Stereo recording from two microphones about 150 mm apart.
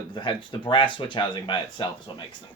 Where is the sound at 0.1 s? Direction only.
30° left (ahead or behind).